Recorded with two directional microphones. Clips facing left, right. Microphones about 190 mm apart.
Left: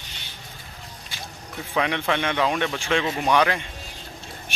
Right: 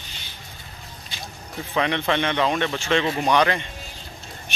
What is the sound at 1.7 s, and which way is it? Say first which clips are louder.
Speech: right 1 dB; 5° left (ahead or behind).